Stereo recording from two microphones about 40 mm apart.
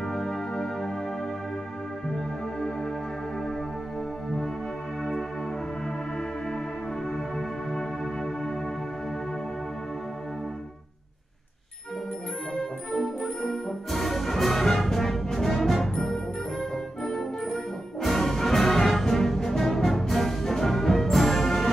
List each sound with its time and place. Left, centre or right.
0.0 s music: centre
2.1 s music: centre
7.1 s music: centre
12.9 s music: centre